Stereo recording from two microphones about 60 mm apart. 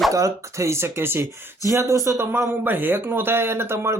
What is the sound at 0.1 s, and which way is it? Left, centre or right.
Speech, right.